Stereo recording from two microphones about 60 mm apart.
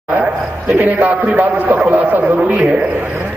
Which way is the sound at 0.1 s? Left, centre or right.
Right.